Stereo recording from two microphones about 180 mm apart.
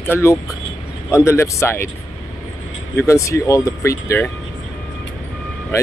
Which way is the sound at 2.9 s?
15° left (ahead or behind).